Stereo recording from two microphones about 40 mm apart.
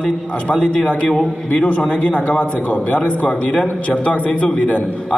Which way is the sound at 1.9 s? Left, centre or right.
Left.